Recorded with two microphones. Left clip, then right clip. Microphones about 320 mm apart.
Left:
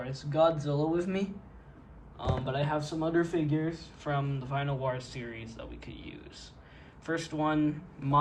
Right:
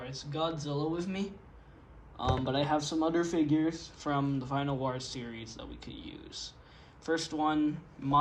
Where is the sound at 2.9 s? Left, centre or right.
Centre.